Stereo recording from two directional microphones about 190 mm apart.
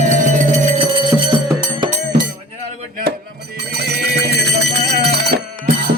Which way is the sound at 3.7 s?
60° right (ahead or behind).